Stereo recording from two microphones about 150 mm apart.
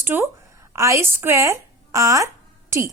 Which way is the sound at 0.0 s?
15° right (ahead or behind).